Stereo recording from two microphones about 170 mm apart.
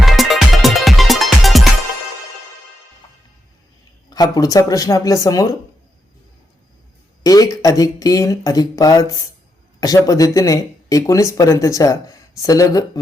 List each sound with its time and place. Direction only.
0.0 s music: centre (ahead or behind)
4.1 s speech: 20° left (ahead or behind)
7.3 s speech: 20° left (ahead or behind)